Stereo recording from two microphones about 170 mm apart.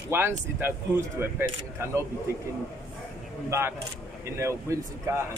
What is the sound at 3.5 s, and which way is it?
Speech, 15° right (ahead or behind).